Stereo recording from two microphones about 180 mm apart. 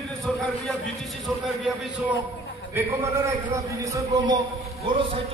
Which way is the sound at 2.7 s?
15° right (ahead or behind).